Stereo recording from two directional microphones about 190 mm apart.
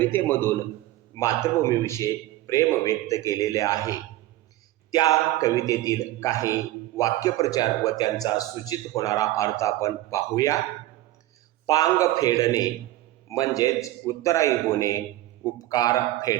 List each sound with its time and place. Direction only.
0.0 s speech: 10° left (ahead or behind)
11.6 s a man's voice: 20° left (ahead or behind)